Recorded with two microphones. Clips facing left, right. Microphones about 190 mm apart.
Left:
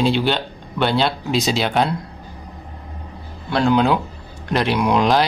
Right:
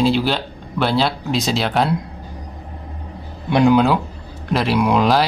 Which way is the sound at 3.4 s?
15° right (ahead or behind).